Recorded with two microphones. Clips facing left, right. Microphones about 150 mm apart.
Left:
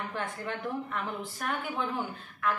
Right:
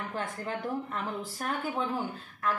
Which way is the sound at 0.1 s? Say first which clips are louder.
Right 1 dB; 35° right (ahead or behind).